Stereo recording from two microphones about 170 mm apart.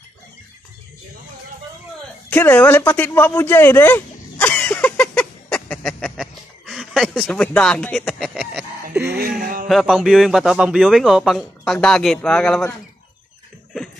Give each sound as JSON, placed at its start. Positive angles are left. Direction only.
{"t": 2.2, "sound": "a sound", "side_deg": 10}
{"t": 9.4, "sound": "speech", "side_deg": -55}
{"t": 9.7, "sound": "a man's voice", "side_deg": 0}